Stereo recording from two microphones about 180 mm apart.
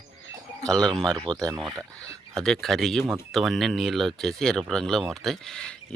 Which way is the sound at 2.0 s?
15° right (ahead or behind).